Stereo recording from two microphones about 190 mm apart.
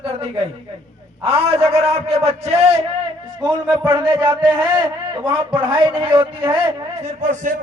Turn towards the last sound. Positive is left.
turn(degrees=-40)  # may be behind; listen again after turning